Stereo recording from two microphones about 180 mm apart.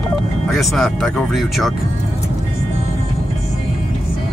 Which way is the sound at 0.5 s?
Centre (ahead or behind).